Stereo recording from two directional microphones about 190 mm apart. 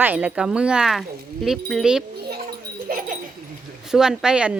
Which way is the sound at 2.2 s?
50° right (ahead or behind).